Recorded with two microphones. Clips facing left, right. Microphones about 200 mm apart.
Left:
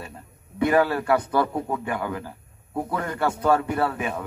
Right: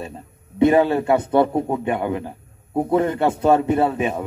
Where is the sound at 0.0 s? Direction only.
25° right (ahead or behind).